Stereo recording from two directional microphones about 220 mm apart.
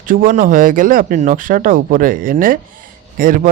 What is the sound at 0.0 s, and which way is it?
Speech, 40° right (ahead or behind).